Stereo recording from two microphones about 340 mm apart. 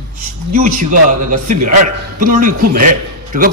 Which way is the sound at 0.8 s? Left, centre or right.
Right.